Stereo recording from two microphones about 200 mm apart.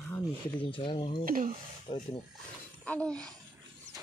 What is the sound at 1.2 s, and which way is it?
Speech, 45° right (ahead or behind).